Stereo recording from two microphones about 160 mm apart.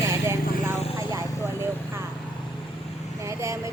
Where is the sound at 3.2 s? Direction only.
20° right (ahead or behind).